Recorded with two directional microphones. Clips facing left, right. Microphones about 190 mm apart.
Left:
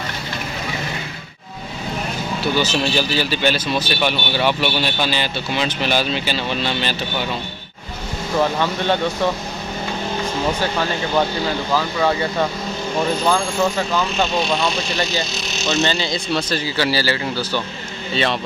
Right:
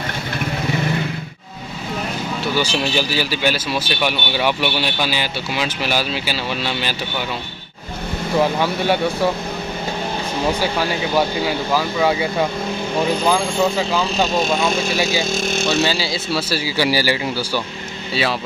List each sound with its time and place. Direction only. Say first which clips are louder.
2.5 s a man's voice: even; 10° right (ahead or behind)
8.4 s a man's voice: right 1 dB; 10° right (ahead or behind)
10.6 s a man's voice: right 1 dB; 10° right (ahead or behind)
15.3 s speech: right 5 dB; 50° right (ahead or behind)
15.7 s a man's voice: left 3 dB; 10° right (ahead or behind)